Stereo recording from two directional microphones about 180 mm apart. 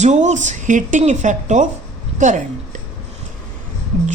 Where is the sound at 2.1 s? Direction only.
40° right (ahead or behind).